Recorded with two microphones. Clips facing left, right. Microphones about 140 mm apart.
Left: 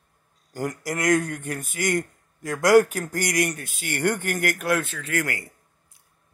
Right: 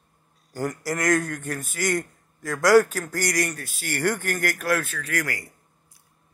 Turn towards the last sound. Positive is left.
turn(degrees=25)  # may be behind; listen again after turning